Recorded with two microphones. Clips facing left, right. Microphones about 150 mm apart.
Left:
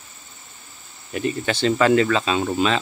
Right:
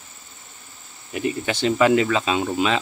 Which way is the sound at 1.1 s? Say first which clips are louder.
Left 1 dB; 10° right (ahead or behind).